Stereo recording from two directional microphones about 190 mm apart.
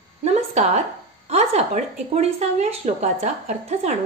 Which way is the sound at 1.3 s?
35° right (ahead or behind).